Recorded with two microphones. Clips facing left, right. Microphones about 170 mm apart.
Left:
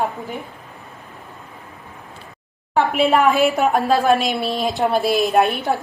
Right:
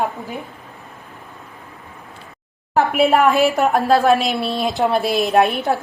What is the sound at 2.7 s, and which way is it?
A woman's voice, 5° right (ahead or behind).